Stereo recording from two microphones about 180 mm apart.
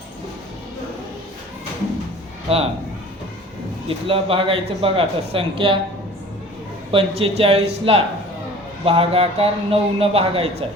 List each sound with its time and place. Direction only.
2.5 s speech: 35° right (ahead or behind)
3.8 s speech: 30° right (ahead or behind)
6.9 s speech: 35° right (ahead or behind)